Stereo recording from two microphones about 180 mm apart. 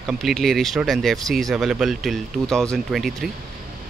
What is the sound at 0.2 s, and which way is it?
Speech, centre (ahead or behind).